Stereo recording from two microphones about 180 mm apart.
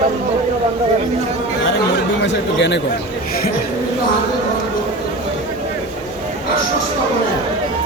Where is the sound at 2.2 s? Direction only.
80° left.